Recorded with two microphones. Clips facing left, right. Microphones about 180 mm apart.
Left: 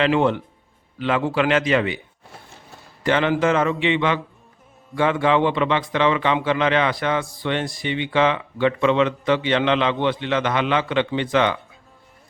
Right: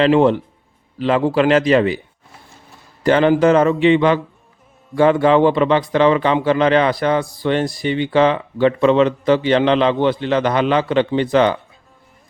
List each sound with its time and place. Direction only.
0.0 s a man's voice: 35° right (ahead or behind)
3.0 s a man's voice: 40° right (ahead or behind)